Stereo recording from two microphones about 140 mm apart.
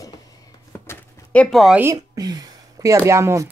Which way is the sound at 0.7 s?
15° left (ahead or behind).